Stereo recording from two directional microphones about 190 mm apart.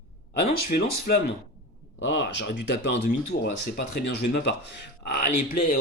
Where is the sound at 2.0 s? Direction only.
65° left (ahead or behind).